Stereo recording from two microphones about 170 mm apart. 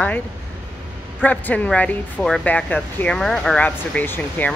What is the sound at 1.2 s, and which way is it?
Speech, 10° left (ahead or behind).